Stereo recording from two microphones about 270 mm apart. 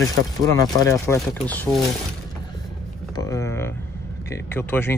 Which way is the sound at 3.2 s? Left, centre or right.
Centre.